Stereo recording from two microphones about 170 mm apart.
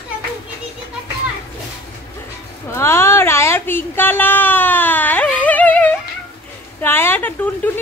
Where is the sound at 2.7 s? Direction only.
15° left (ahead or behind).